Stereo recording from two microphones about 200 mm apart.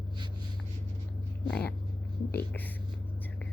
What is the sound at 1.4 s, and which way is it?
Speech, 5° left (ahead or behind).